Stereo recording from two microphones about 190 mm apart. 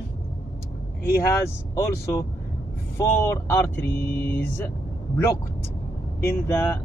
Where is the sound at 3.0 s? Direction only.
15° left (ahead or behind).